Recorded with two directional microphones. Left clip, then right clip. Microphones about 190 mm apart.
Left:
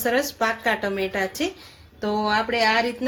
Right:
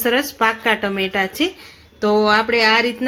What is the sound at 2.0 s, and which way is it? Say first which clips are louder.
Speech: right 8 dB; 50° right (ahead or behind).